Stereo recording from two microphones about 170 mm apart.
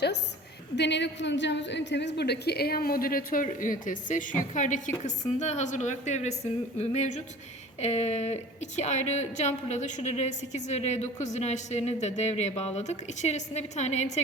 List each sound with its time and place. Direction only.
0.8 s a woman's voice: 90° left; by 14.1 s 40° left (ahead or behind)